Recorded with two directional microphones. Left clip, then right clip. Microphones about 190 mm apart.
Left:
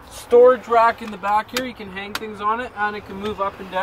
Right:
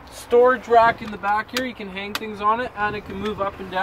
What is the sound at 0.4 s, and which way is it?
Speech, 20° left (ahead or behind).